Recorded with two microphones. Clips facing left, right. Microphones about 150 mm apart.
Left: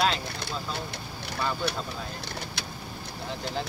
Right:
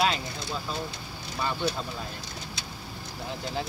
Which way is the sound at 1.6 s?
65° left (ahead or behind).